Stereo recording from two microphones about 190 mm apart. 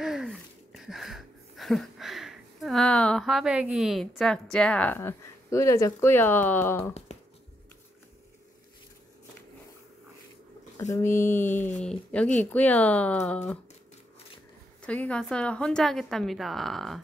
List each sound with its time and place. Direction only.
0.0 s a sound: centre (ahead or behind)
7.1 s finger snapping: 35° left (ahead or behind)
10.8 s speech: 15° left (ahead or behind)
14.8 s a woman's voice: 5° left (ahead or behind)